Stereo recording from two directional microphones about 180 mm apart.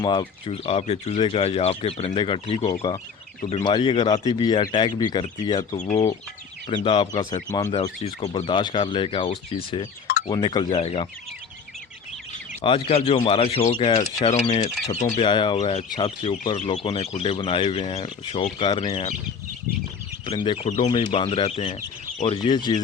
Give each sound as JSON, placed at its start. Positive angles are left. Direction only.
{"t": 0.0, "sound": "speech", "side_deg": 25}
{"t": 5.7, "sound": "speech", "side_deg": 40}
{"t": 6.7, "sound": "speech", "side_deg": 30}
{"t": 7.7, "sound": "speech", "side_deg": 35}
{"t": 12.6, "sound": "speech", "side_deg": 30}
{"t": 15.2, "sound": "speech", "side_deg": 25}
{"t": 20.2, "sound": "speech", "side_deg": 30}
{"t": 22.4, "sound": "speech", "side_deg": 25}